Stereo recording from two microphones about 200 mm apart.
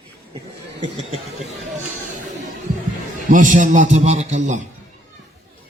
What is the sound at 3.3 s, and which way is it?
A man's voice, 40° right (ahead or behind).